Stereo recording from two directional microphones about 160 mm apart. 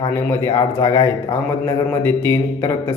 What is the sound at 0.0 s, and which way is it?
Speech, 15° left (ahead or behind).